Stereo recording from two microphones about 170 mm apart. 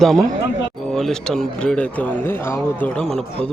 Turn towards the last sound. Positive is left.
turn(degrees=5)  # may be behind; listen again after turning